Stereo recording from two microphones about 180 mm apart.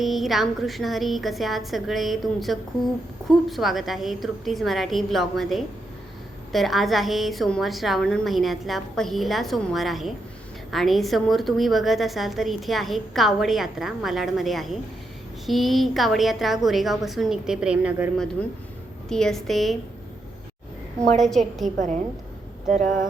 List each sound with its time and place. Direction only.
0.0 s a woman's voice: centre (ahead or behind)
21.2 s a woman's voice: centre (ahead or behind)
21.8 s a woman's voice: 40° right (ahead or behind)